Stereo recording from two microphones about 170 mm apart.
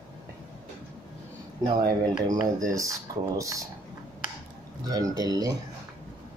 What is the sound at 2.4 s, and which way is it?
Speech, 20° right (ahead or behind).